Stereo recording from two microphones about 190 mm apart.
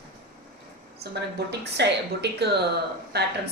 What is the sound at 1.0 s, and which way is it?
Speech, 60° right (ahead or behind).